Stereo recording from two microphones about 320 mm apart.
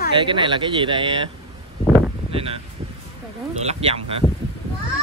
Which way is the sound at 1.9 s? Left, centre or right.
Centre.